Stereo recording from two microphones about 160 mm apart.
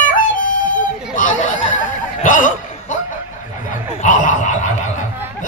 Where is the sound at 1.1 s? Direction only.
55° left (ahead or behind).